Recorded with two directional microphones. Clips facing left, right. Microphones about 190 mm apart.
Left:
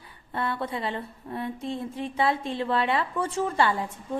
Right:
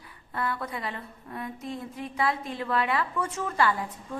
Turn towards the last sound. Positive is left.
turn(degrees=25)  # may be behind; listen again after turning